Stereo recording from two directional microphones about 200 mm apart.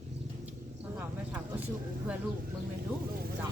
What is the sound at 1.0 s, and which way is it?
Speech, 10° right (ahead or behind).